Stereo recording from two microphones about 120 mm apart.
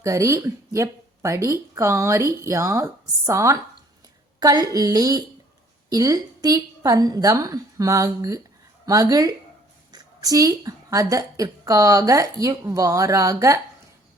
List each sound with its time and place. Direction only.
0.0 s a woman's voice: 25° right (ahead or behind)